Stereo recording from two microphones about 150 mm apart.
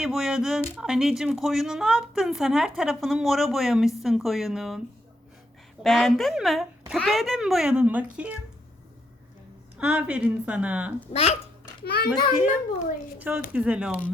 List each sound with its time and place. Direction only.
0.0 s a woman's voice: 5° right (ahead or behind)
5.8 s a woman's voice: centre (ahead or behind)
9.7 s a woman's voice: 5° right (ahead or behind)
11.1 s speech: 45° left (ahead or behind)
11.9 s a child's voice: 90° left
13.1 s a woman's voice: 10° right (ahead or behind)